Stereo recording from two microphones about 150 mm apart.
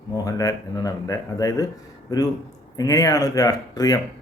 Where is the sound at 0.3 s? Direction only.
25° left (ahead or behind).